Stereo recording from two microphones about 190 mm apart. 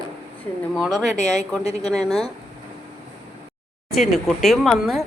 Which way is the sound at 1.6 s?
35° left (ahead or behind).